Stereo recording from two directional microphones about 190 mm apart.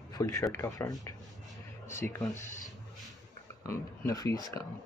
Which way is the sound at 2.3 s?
40° left (ahead or behind).